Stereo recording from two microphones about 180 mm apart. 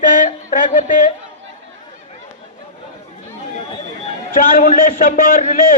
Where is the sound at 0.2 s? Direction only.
45° left (ahead or behind).